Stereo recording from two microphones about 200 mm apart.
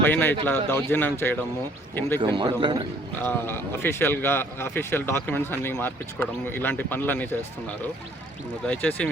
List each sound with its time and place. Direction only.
0.0 s speech: 10° left (ahead or behind)
2.2 s a man's voice: 25° right (ahead or behind)
3.2 s speech: 10° left (ahead or behind)
8.6 s speech: 10° left (ahead or behind)